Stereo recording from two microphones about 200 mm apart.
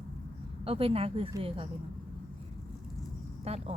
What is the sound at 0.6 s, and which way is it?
Speech, 30° right (ahead or behind).